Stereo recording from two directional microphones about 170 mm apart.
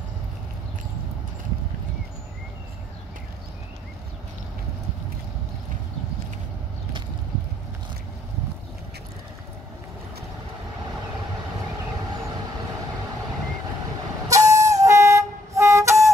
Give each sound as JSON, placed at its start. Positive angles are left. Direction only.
{"t": 14.3, "sound": "vehicle", "side_deg": -20}